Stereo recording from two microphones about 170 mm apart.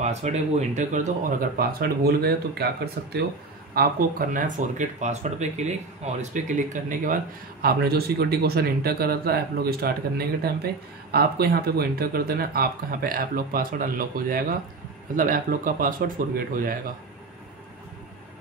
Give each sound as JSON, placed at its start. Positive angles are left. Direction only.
{"t": 0.0, "sound": "speech", "side_deg": -40}
{"t": 7.6, "sound": "speech", "side_deg": -65}